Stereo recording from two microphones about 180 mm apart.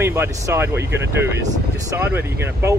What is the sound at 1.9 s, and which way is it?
Speech, 10° right (ahead or behind).